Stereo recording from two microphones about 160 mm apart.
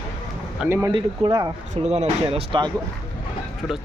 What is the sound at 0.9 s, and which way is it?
Speech, 30° right (ahead or behind).